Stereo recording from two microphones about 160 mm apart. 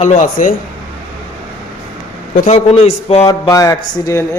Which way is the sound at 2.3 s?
50° left (ahead or behind).